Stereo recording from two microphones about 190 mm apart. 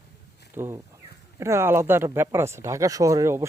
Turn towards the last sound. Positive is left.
turn(degrees=-15)  # may be behind; listen again after turning